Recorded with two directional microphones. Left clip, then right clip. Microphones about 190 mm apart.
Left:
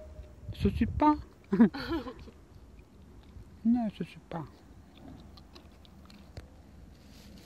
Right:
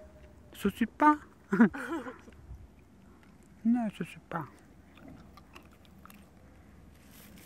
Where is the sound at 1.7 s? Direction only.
40° left (ahead or behind).